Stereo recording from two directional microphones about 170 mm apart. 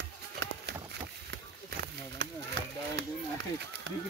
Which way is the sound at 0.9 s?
80° right.